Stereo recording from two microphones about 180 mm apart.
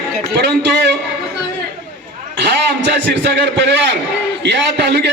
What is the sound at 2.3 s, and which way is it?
A man's voice, 70° right (ahead or behind).